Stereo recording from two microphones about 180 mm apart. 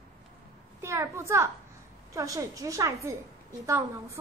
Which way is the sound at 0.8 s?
15° right (ahead or behind).